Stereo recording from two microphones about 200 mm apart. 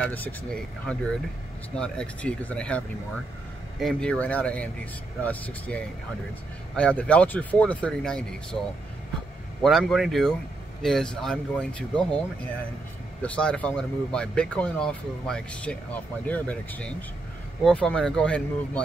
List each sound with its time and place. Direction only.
0.0 s speech: 10° left (ahead or behind)
1.8 s speech: 5° left (ahead or behind)
3.8 s speech: 5° left (ahead or behind)
9.6 s speech: centre (ahead or behind)